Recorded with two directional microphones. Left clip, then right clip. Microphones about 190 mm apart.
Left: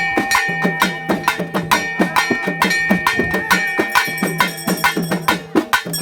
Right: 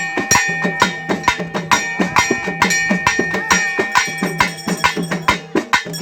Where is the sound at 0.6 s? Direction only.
30° left (ahead or behind).